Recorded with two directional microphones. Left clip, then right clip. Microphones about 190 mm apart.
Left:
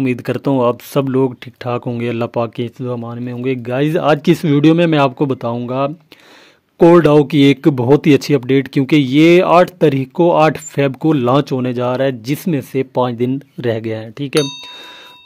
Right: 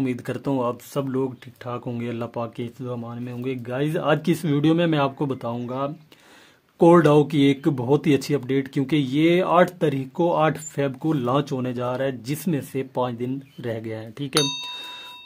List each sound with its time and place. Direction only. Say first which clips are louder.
0.0 s speech: left 9 dB; 45° left (ahead or behind)
14.3 s speech: left 6 dB; centre (ahead or behind)